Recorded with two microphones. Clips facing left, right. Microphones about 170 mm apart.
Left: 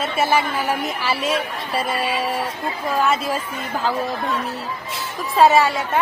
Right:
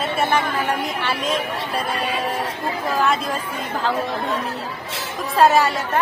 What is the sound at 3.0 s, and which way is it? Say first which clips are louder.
Speech: left 1 dB; centre (ahead or behind).